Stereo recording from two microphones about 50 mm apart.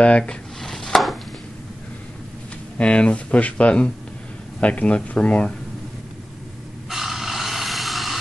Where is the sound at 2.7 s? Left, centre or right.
Left.